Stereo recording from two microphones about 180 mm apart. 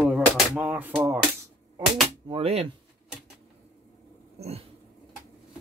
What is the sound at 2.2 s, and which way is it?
Speech, 35° right (ahead or behind).